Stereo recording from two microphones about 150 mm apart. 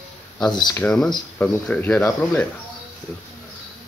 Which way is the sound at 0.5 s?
30° left (ahead or behind).